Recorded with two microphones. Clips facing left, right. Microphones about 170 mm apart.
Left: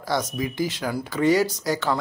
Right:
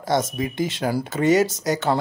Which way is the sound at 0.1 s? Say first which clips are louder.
Right 3 dB; 25° right (ahead or behind).